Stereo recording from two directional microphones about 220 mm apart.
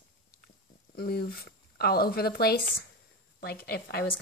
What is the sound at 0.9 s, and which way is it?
Speech, 45° left (ahead or behind).